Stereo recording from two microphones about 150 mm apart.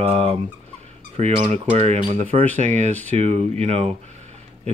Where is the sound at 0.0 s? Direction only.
40° right (ahead or behind).